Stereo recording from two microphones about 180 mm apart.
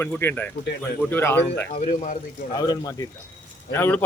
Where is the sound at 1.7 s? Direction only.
45° left (ahead or behind).